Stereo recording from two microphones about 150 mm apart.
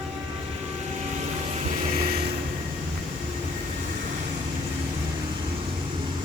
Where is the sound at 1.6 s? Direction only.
45° right (ahead or behind).